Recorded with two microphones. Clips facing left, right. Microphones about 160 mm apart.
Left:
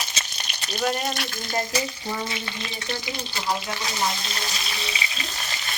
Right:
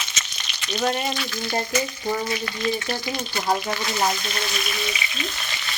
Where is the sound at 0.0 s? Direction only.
35° left (ahead or behind).